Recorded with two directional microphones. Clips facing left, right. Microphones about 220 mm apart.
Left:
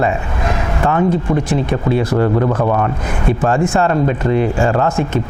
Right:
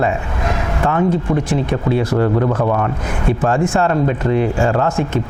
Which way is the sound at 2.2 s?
25° left (ahead or behind).